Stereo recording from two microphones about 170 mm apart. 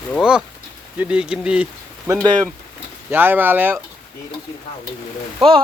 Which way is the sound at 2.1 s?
20° right (ahead or behind).